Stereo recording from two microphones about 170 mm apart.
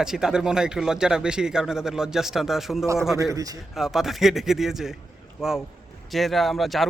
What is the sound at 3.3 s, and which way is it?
Speech, 20° right (ahead or behind).